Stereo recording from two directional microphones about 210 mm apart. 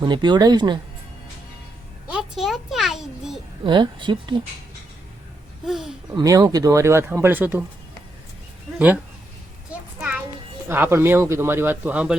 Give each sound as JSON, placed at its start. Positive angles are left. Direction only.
{"t": 0.0, "sound": "speech", "side_deg": -20}
{"t": 2.0, "sound": "a sound", "side_deg": -5}
{"t": 3.6, "sound": "speech", "side_deg": -25}
{"t": 5.6, "sound": "speech", "side_deg": 0}
{"t": 6.1, "sound": "a man's voice", "side_deg": -15}
{"t": 10.7, "sound": "a man's voice", "side_deg": -10}